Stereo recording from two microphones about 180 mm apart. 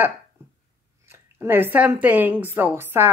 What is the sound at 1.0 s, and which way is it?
A woman's voice, 15° right (ahead or behind).